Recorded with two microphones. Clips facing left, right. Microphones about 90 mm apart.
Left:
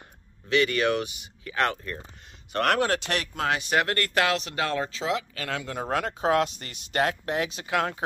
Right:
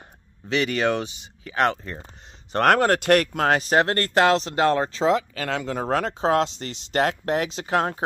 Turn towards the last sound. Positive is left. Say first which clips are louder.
# right 4 dB
turn(degrees=-30)  # may be behind; listen again after turning